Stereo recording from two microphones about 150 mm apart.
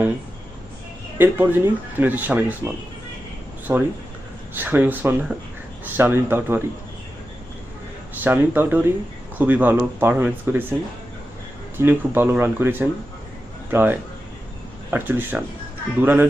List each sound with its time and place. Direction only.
1.2 s speech: 15° right (ahead or behind)
8.2 s speech: 10° right (ahead or behind)
11.8 s speech: 15° right (ahead or behind)